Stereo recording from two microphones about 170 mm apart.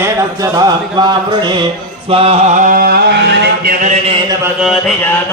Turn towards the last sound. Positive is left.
turn(degrees=-85)